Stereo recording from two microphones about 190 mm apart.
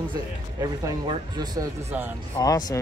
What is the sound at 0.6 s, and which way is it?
Speech, 20° right (ahead or behind).